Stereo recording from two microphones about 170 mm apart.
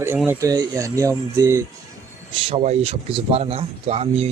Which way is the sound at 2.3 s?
30° right (ahead or behind).